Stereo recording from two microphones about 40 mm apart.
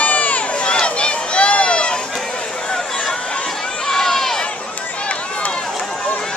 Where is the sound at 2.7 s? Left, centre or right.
Centre.